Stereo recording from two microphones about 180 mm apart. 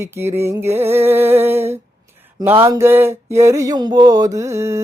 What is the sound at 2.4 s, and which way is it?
Mantra, 10° right (ahead or behind).